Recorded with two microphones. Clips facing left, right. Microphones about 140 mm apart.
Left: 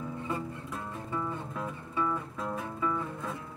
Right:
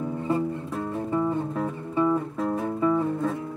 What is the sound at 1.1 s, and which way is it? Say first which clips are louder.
Music: right 9 dB; 30° right (ahead or behind).